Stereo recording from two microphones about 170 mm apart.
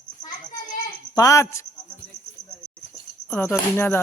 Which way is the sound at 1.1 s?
20° left (ahead or behind).